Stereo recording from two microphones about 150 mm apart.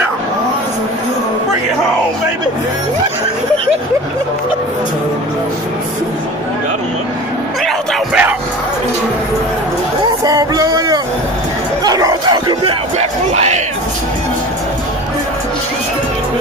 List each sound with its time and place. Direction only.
7.6 s bellow: 10° right (ahead or behind)
10.2 s music: 25° right (ahead or behind)
11.8 s bow-wow: 25° right (ahead or behind)
13.0 s crowd: 50° right (ahead or behind)